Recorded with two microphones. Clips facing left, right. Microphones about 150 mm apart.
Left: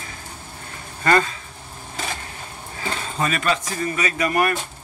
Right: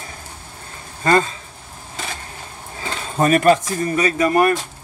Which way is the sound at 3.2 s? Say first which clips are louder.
Right 9 dB; 50° right (ahead or behind).